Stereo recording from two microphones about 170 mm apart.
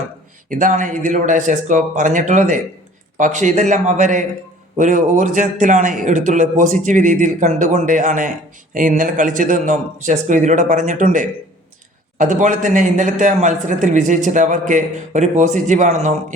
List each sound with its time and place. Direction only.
0.5 s a man's voice: 50° right (ahead or behind)